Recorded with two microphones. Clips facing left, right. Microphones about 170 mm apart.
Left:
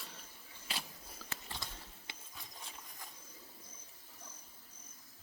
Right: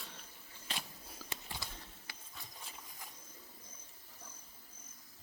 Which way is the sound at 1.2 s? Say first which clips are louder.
Right 1 dB; 15° right (ahead or behind).